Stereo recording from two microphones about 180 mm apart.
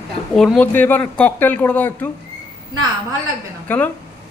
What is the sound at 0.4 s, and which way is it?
A man's voice, 5° left (ahead or behind).